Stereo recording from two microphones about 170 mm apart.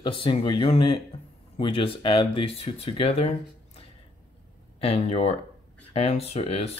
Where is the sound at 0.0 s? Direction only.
30° left (ahead or behind).